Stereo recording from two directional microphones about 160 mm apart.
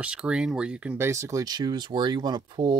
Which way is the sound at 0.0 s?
5° right (ahead or behind).